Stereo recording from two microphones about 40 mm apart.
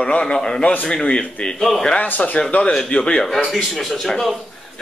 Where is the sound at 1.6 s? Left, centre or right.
Centre.